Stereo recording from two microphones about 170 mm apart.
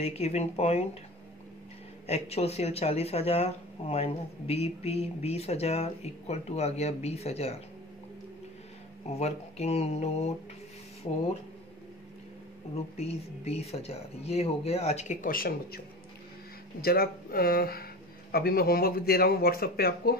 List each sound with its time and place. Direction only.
0.0 s speech: 40° left (ahead or behind)
2.0 s speech: 40° left (ahead or behind)
9.1 s speech: 40° left (ahead or behind)
12.7 s speech: 35° left (ahead or behind)
15.2 s speech: 60° left (ahead or behind)
16.8 s speech: 65° left (ahead or behind)